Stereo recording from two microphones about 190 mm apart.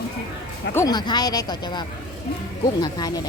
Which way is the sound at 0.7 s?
15° left (ahead or behind).